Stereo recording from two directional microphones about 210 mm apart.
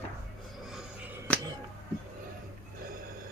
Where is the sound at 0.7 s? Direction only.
Centre (ahead or behind).